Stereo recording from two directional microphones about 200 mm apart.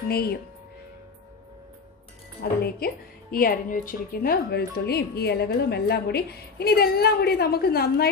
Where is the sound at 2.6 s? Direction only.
50° left (ahead or behind).